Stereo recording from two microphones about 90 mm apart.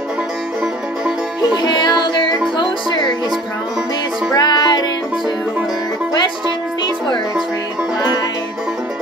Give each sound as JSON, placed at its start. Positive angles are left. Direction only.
{"t": 1.6, "sound": "music", "side_deg": 60}
{"t": 2.5, "sound": "speech", "side_deg": 60}
{"t": 4.4, "sound": "music", "side_deg": 50}